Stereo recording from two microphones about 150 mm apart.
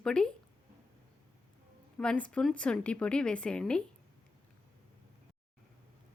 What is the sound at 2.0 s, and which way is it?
A woman's voice, 5° left (ahead or behind).